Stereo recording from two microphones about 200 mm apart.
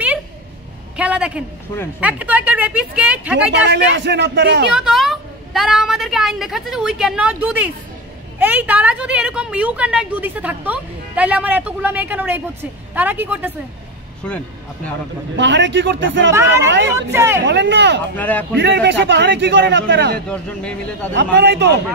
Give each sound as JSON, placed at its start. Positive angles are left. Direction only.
{"t": 0.9, "sound": "a man's voice", "side_deg": -5}
{"t": 3.9, "sound": "a man's voice", "side_deg": -60}
{"t": 4.7, "sound": "a woman's voice", "side_deg": 0}
{"t": 15.3, "sound": "a man's voice", "side_deg": -65}
{"t": 16.9, "sound": "a woman's voice", "side_deg": -15}
{"t": 17.5, "sound": "a man's voice", "side_deg": -60}
{"t": 18.1, "sound": "speech", "side_deg": 10}
{"t": 18.6, "sound": "a man's voice", "side_deg": -60}
{"t": 20.2, "sound": "a woman's voice", "side_deg": 5}
{"t": 21.1, "sound": "a man's voice", "side_deg": -60}